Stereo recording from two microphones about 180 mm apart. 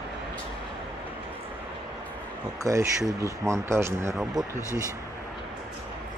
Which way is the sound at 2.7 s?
20° right (ahead or behind).